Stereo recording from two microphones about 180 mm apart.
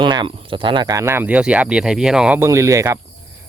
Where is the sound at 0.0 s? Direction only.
25° right (ahead or behind).